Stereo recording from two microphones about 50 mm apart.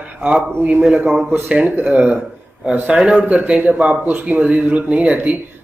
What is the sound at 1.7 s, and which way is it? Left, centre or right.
Speech, right.